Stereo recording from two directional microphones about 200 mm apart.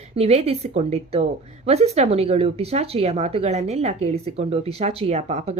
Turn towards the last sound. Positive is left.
turn(degrees=-35)  # may be behind; listen again after turning